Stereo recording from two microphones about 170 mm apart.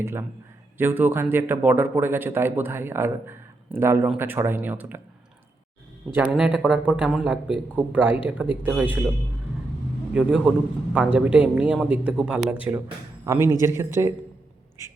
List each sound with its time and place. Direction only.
0.0 s speech: 15° right (ahead or behind)
6.1 s speech: 5° right (ahead or behind)
10.1 s a man's voice: 5° right (ahead or behind)